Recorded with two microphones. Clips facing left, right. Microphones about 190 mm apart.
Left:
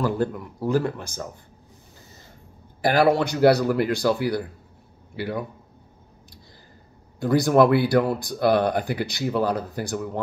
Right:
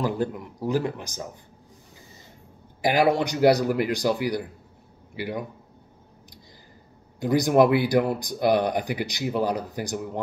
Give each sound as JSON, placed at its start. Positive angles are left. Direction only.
{"t": 0.0, "sound": "speech", "side_deg": -15}
{"t": 2.8, "sound": "a man's voice", "side_deg": -15}
{"t": 7.2, "sound": "speech", "side_deg": -20}